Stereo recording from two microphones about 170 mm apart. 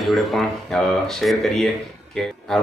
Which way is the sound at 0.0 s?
Centre (ahead or behind).